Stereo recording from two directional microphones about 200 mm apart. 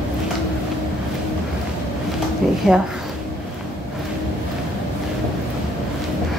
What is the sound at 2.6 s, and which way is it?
Speech, 5° right (ahead or behind).